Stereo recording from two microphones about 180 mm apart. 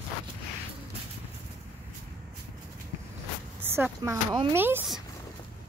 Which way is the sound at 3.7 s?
15° right (ahead or behind).